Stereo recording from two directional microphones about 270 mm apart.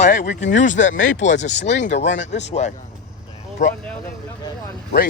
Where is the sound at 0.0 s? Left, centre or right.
Left.